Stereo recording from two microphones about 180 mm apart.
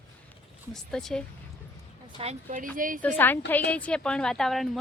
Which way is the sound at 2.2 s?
40° right (ahead or behind).